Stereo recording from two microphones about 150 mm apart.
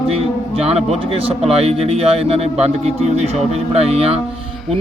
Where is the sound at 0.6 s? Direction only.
45° right (ahead or behind).